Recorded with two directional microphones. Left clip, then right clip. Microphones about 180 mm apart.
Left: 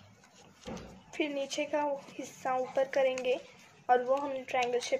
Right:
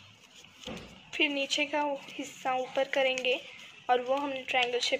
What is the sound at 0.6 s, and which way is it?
A woman's voice, 5° left (ahead or behind).